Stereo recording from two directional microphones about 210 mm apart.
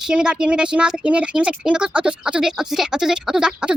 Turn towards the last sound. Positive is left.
turn(degrees=-5)  # may be behind; listen again after turning